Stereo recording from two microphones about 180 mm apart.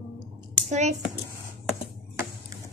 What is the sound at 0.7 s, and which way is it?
Speech, 40° right (ahead or behind).